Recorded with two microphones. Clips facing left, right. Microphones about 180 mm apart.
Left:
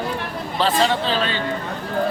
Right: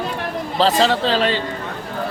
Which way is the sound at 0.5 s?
35° right (ahead or behind).